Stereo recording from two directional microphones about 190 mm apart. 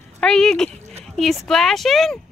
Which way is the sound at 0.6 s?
35° right (ahead or behind).